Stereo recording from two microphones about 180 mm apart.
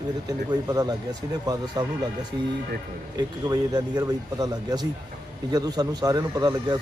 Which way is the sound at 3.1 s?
20° right (ahead or behind).